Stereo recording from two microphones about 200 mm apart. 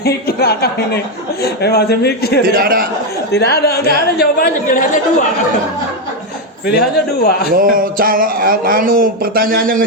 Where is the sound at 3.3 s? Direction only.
55° left (ahead or behind).